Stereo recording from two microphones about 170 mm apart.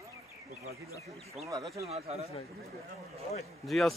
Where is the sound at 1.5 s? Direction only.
20° right (ahead or behind).